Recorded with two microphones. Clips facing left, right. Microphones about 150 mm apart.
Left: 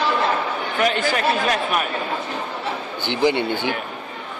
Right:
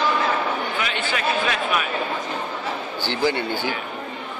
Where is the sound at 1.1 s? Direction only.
45° left (ahead or behind).